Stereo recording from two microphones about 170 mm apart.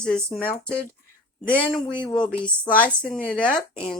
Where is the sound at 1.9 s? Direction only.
25° left (ahead or behind).